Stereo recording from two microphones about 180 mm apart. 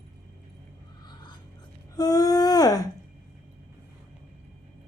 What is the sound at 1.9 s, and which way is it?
Humming, 20° left (ahead or behind).